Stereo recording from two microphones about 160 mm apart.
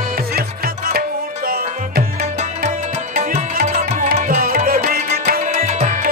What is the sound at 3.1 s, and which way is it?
Music, 55° right (ahead or behind).